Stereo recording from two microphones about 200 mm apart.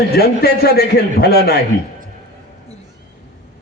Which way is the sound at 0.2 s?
50° left (ahead or behind).